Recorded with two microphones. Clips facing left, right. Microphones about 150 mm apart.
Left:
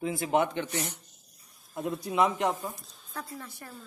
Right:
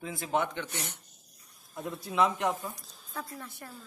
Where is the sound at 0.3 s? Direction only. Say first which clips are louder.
Left 3 dB; 20° left (ahead or behind).